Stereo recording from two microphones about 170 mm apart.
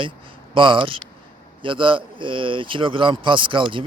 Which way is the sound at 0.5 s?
30° right (ahead or behind).